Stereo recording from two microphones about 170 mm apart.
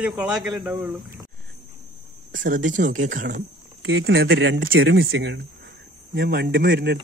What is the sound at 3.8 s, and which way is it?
Speech, 90° right.